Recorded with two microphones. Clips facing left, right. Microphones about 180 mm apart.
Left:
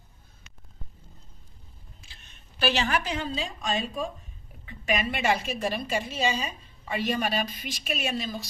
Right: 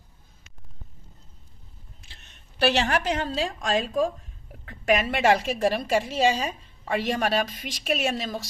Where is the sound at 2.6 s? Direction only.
75° right (ahead or behind).